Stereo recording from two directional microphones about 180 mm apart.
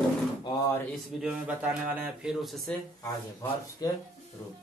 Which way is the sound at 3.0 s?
20° left (ahead or behind).